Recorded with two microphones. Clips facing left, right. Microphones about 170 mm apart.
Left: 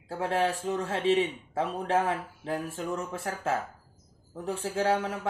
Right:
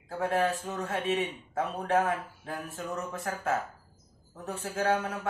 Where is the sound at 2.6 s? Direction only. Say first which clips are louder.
Left 3 dB; 30° left (ahead or behind).